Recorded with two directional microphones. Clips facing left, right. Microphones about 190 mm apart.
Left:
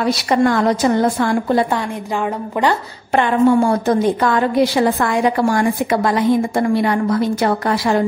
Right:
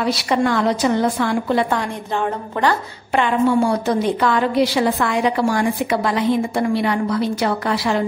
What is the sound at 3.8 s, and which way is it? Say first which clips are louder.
A woman's voice: left 3 dB; 50° left (ahead or behind).